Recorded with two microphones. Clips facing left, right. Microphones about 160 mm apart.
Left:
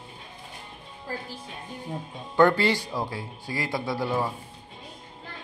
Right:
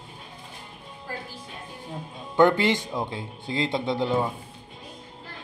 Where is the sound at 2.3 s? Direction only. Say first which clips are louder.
Right 1 dB; 20° right (ahead or behind).